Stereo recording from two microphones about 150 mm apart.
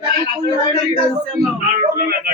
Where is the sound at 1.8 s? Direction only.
75° right (ahead or behind).